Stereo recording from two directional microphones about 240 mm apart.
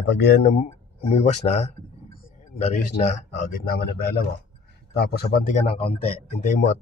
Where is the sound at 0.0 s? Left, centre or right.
Left.